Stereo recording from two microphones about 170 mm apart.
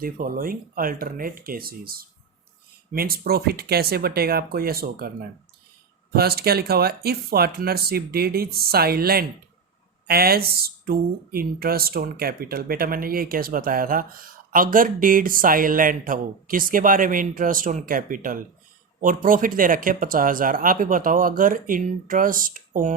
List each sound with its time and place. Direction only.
0.0 s speech: 55° right (ahead or behind)
6.1 s speech: 70° right (ahead or behind); by 23.0 s 50° right (ahead or behind)